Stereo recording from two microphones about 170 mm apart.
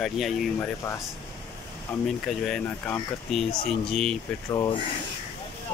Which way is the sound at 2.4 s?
5° left (ahead or behind).